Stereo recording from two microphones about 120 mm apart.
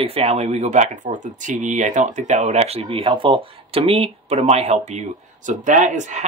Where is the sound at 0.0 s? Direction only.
55° right (ahead or behind).